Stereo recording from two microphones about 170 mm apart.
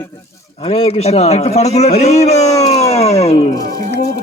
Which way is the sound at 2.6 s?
40° left (ahead or behind).